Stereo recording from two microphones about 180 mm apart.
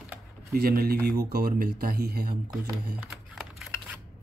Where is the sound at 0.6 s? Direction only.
55° right (ahead or behind).